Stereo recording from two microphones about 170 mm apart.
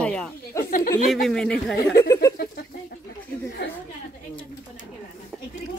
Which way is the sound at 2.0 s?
20° left (ahead or behind).